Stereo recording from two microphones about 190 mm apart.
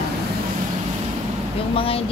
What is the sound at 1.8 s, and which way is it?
Speech, 30° left (ahead or behind).